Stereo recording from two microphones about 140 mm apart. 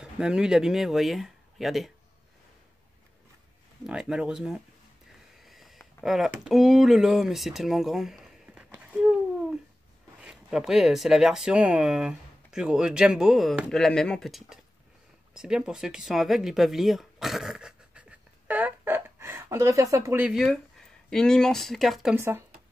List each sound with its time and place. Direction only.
0.0 s speech: 5° right (ahead or behind)
3.8 s speech: 5° right (ahead or behind)
5.4 s a sound: centre (ahead or behind)
10.2 s speech: 5° right (ahead or behind)
18.5 s a sound: 15° right (ahead or behind)
21.1 s speech: 5° left (ahead or behind)
22.1 s speech: 15° right (ahead or behind)